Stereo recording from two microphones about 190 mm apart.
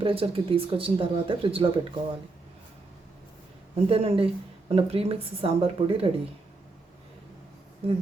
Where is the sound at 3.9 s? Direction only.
30° right (ahead or behind).